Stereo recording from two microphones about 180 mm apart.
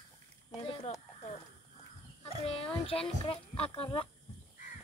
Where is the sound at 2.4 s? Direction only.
30° left (ahead or behind).